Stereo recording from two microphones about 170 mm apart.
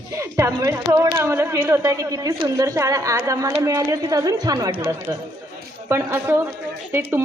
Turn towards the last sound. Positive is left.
turn(degrees=-15)  # may be behind; listen again after turning